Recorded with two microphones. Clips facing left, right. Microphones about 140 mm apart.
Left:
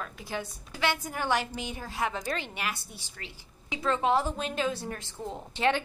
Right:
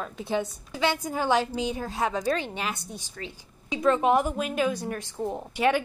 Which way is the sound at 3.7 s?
20° right (ahead or behind).